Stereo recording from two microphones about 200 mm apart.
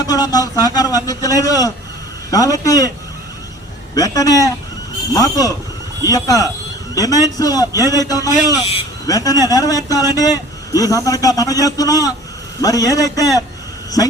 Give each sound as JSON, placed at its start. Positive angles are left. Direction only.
{"t": 0.1, "sound": "a man's voice", "side_deg": 20}
{"t": 3.9, "sound": "a man's voice", "side_deg": 15}